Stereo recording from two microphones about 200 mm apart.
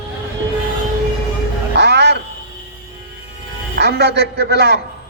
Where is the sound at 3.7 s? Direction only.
55° right (ahead or behind).